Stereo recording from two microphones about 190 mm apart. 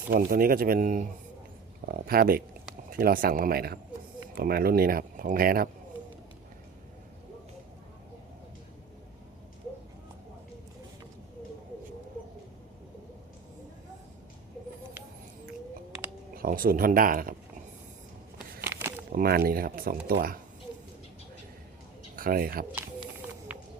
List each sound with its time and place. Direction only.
0.1 s speech: 50° right (ahead or behind)
16.3 s speech: 50° right (ahead or behind)
18.6 s a sound: 10° right (ahead or behind)
19.1 s speech: 50° right (ahead or behind)
22.1 s speech: 50° right (ahead or behind)
23.5 s run: 5° right (ahead or behind)